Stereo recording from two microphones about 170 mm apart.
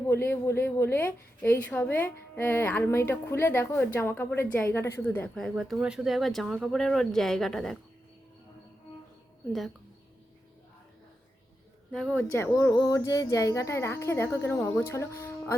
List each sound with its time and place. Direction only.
0.1 s a woman's voice: 15° left (ahead or behind)
9.5 s speech: centre (ahead or behind)
11.9 s a woman's voice: centre (ahead or behind)
12.3 s a woman's voice: 15° left (ahead or behind)